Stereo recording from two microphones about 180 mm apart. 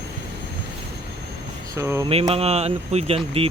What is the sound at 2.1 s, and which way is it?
Speech, 35° right (ahead or behind).